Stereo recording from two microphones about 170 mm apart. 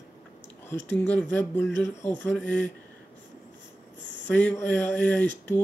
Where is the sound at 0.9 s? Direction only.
10° left (ahead or behind).